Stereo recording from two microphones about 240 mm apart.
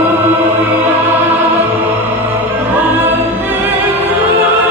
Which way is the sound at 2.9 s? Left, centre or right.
Centre.